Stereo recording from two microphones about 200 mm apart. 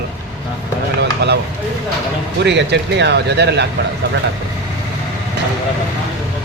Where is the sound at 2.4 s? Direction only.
60° right (ahead or behind).